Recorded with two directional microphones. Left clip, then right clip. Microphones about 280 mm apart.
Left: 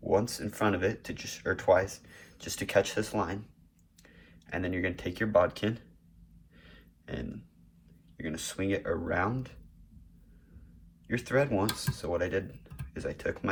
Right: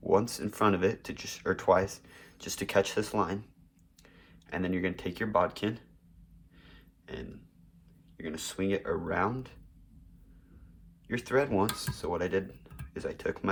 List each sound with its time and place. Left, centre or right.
0.1 s speech: right
6.6 s a sound: centre
8.2 s speech: centre
11.1 s speech: centre